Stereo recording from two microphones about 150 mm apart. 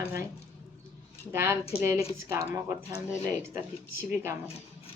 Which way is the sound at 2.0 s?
45° left (ahead or behind).